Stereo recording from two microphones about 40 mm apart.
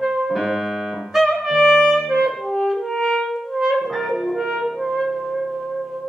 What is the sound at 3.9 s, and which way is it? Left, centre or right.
Music, centre.